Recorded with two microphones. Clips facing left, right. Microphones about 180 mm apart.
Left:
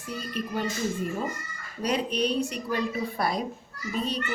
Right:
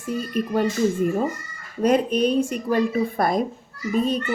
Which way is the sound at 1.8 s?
50° right (ahead or behind).